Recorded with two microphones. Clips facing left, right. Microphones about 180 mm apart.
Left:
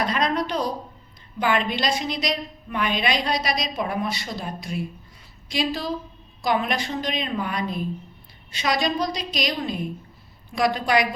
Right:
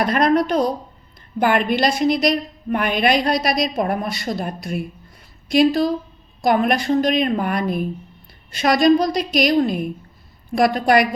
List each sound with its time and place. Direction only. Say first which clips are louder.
0.0 s a woman's voice: right 7 dB; 55° right (ahead or behind)